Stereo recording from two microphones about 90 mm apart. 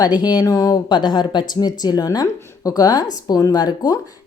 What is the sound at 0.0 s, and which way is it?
A woman's voice, 50° left (ahead or behind).